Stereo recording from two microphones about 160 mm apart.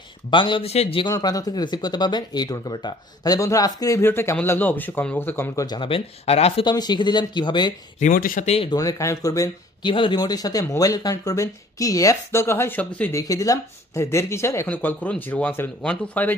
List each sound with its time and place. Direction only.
0.3 s speech: 30° left (ahead or behind)
1.1 s speech: 25° left (ahead or behind)
5.7 s speech: 30° left (ahead or behind)
8.0 s speech: 55° left (ahead or behind)
8.5 s speech: 35° left (ahead or behind)
8.7 s speech: 20° left (ahead or behind)
13.2 s speech: 20° left (ahead or behind)